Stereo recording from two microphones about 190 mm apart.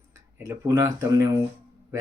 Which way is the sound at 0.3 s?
15° right (ahead or behind).